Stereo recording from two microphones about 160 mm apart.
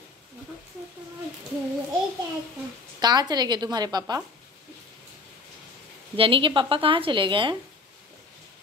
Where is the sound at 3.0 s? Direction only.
25° right (ahead or behind).